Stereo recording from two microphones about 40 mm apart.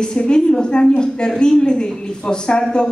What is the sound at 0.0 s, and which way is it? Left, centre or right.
A woman's voice, left.